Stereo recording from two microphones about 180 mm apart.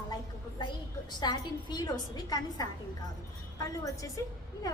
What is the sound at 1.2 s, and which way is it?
A woman's voice, 25° left (ahead or behind).